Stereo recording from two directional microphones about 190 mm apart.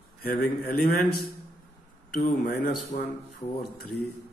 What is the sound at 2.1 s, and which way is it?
Speech, 50° left (ahead or behind).